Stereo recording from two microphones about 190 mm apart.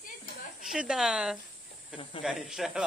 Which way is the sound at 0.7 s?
5° right (ahead or behind).